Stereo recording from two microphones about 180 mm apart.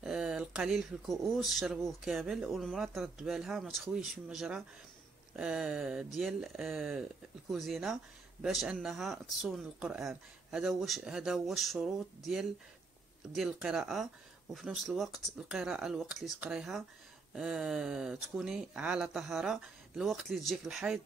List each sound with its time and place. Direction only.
0.0 s speech: 5° right (ahead or behind)